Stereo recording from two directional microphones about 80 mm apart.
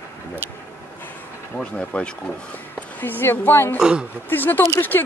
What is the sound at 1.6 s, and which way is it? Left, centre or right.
A woman's voice, centre.